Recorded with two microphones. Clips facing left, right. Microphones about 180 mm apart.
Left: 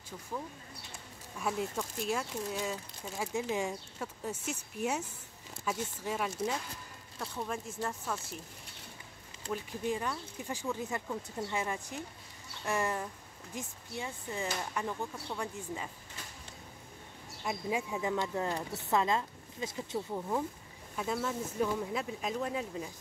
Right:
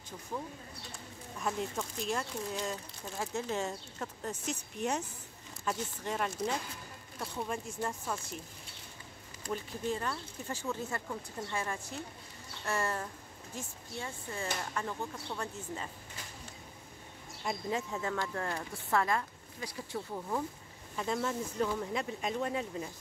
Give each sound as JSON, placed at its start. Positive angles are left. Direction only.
{"t": 1.4, "sound": "speech", "side_deg": 5}
{"t": 9.5, "sound": "speech", "side_deg": 15}
{"t": 17.4, "sound": "speech", "side_deg": 5}
{"t": 20.2, "sound": "speech", "side_deg": 10}